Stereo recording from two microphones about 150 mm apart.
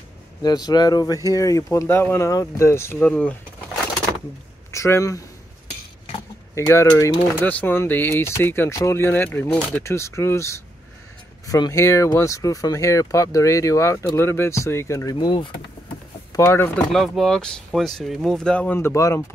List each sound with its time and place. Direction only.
0.4 s speech: 25° left (ahead or behind); by 3.3 s 10° left (ahead or behind)
4.6 s speech: 20° left (ahead or behind)
6.5 s speech: 20° left (ahead or behind)
16.3 s speech: 15° left (ahead or behind)
16.9 s speech: centre (ahead or behind); by 19.2 s 20° left (ahead or behind)